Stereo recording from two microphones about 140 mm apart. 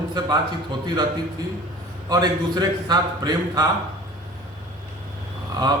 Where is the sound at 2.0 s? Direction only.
30° right (ahead or behind).